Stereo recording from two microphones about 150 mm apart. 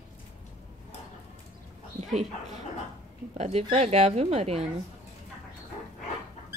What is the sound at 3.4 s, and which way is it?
Speech, 45° right (ahead or behind).